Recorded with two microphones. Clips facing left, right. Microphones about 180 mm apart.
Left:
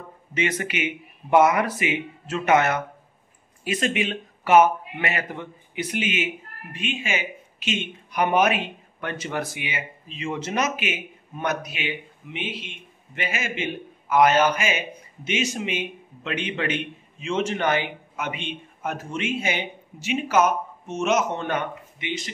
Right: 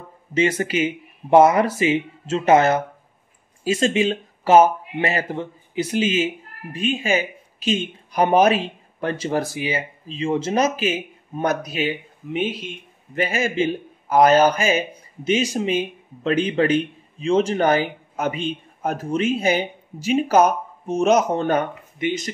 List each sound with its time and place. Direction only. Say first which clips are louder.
0.3 s speech: right 6 dB; 30° right (ahead or behind)